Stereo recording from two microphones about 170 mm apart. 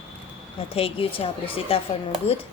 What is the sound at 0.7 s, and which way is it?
A woman's voice, 35° left (ahead or behind).